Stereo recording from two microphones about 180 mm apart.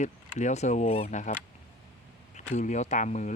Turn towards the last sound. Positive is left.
turn(degrees=40)  # may be behind; listen again after turning